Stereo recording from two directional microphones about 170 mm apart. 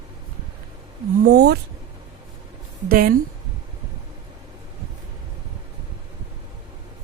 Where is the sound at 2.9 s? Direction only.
55° right (ahead or behind).